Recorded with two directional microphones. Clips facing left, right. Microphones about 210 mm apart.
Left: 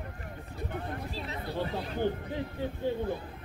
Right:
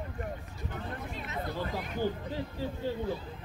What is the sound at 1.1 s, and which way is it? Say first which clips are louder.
Speech: left 1 dB; 30° left (ahead or behind).